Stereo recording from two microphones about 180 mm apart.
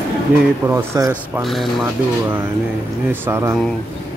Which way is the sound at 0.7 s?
15° right (ahead or behind).